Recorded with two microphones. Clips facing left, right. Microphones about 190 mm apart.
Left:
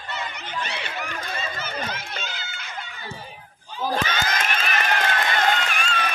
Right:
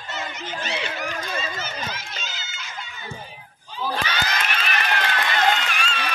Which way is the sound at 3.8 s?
45° left (ahead or behind).